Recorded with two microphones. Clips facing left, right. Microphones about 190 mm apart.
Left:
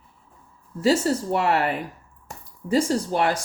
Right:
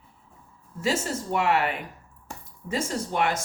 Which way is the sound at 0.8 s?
35° left (ahead or behind).